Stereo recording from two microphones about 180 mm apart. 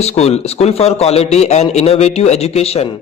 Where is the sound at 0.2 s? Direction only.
35° left (ahead or behind).